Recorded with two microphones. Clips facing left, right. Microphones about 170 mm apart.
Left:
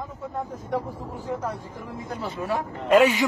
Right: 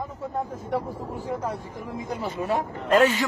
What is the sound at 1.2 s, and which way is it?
Speech, 10° right (ahead or behind).